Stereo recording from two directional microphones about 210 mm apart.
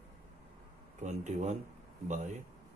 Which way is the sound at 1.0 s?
35° right (ahead or behind).